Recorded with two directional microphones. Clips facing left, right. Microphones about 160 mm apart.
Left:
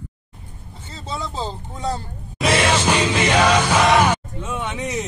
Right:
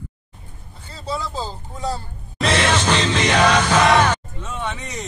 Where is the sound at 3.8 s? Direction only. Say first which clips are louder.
Even; 5° left (ahead or behind).